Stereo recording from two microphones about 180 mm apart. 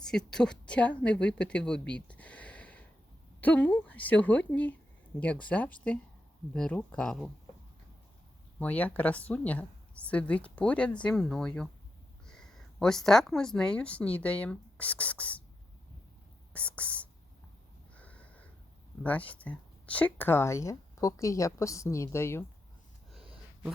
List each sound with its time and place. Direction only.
0.0 s a woman's voice: 5° left (ahead or behind)
8.5 s a woman's voice: 10° left (ahead or behind)
16.5 s speech: 5° left (ahead or behind)
17.9 s a sound: 10° left (ahead or behind)
19.0 s speech: 10° left (ahead or behind)